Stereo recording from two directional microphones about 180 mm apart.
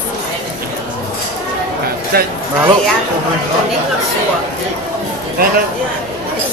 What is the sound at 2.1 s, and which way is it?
Speech, 60° right (ahead or behind).